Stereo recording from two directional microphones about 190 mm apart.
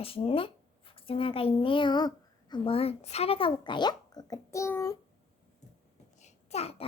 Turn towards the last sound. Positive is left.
turn(degrees=30)  # may be behind; listen again after turning